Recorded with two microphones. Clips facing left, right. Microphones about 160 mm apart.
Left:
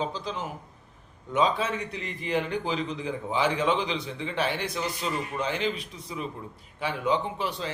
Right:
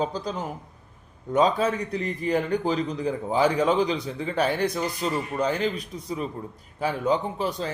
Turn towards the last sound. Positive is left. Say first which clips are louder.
# right 3 dB
turn(degrees=-40)  # may be behind; listen again after turning